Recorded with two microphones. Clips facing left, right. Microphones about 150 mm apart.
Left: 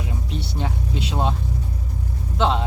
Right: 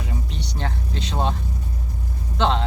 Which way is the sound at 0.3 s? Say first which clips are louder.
Left 2 dB; 5° left (ahead or behind).